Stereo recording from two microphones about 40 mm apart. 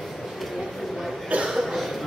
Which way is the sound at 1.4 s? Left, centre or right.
Centre.